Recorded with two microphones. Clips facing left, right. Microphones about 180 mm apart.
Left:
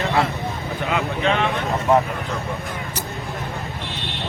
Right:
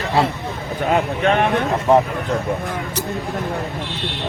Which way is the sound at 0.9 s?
45° right (ahead or behind).